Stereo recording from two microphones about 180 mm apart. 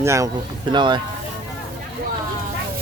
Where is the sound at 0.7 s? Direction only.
25° right (ahead or behind).